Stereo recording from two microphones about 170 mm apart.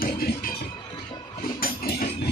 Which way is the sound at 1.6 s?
60° left (ahead or behind).